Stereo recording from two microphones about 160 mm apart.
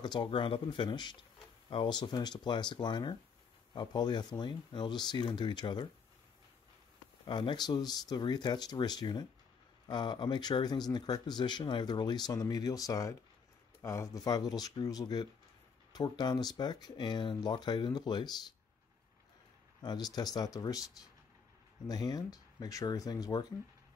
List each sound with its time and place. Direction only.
0.0 s speech: 30° left (ahead or behind)
7.2 s speech: 30° left (ahead or behind)
19.8 s speech: 25° left (ahead or behind)
21.8 s speech: 25° left (ahead or behind)